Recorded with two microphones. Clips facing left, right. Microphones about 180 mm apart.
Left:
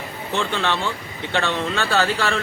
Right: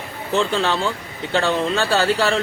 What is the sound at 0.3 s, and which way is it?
Speech, 35° right (ahead or behind).